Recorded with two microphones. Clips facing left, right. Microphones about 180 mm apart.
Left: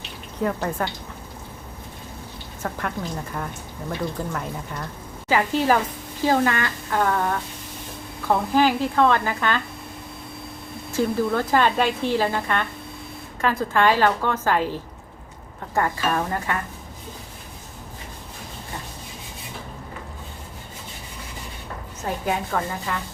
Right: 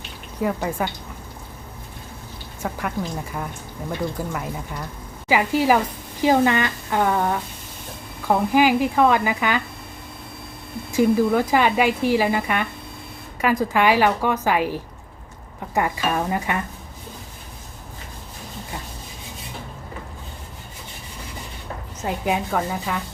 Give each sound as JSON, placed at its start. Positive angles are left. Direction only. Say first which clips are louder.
{"t": 0.4, "sound": "speech", "louder": "right 1 dB", "side_deg": -5}
{"t": 2.6, "sound": "speech", "louder": "right 2 dB", "side_deg": -10}
{"t": 10.9, "sound": "speech", "louder": "right 4 dB", "side_deg": -10}
{"t": 22.0, "sound": "speech", "louder": "right 2 dB", "side_deg": -15}